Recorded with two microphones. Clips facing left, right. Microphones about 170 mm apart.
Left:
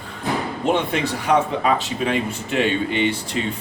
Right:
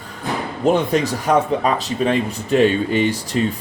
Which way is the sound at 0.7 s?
40° right (ahead or behind).